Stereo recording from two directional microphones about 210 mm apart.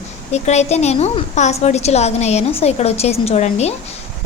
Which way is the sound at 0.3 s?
30° left (ahead or behind).